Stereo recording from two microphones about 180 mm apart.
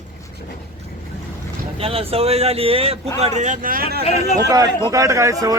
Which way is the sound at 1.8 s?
30° right (ahead or behind).